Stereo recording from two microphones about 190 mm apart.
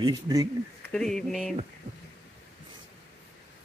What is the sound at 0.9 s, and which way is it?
Speech, 5° left (ahead or behind).